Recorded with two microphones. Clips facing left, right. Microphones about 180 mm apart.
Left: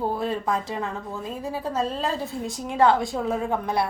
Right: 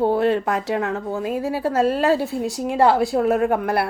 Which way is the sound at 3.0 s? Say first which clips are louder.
Right 8 dB; 70° right (ahead or behind).